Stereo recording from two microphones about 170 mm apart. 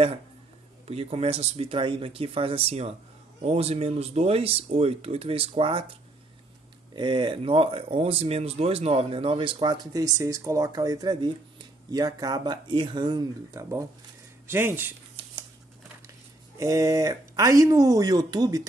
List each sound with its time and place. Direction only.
0.8 s speech: 35° right (ahead or behind)
7.0 s speech: 30° right (ahead or behind); by 15.0 s 10° right (ahead or behind)
16.5 s speech: 20° right (ahead or behind)